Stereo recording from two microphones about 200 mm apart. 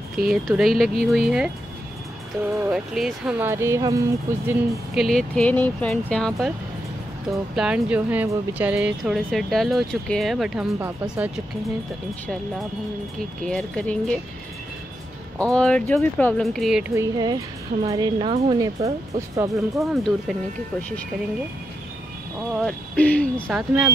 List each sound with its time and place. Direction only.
0.3 s speech: centre (ahead or behind)
2.5 s speech: 5° right (ahead or behind)
4.5 s speech: centre (ahead or behind)
13.4 s speech: 5° left (ahead or behind)
15.3 s speech: 5° left (ahead or behind)
16.9 s speech: 15° right (ahead or behind)
19.5 s speech: centre (ahead or behind)
22.6 s speech: 5° left (ahead or behind)